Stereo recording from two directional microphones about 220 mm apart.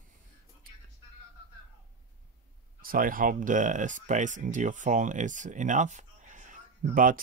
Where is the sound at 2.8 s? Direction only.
40° right (ahead or behind).